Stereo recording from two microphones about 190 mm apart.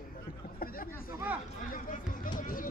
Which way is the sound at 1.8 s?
45° left (ahead or behind).